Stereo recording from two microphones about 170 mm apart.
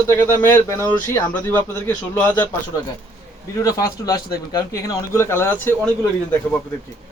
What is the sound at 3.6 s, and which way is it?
A man's voice, 20° left (ahead or behind).